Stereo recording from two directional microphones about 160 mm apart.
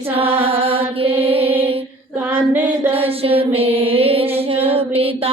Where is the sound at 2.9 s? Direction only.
35° right (ahead or behind).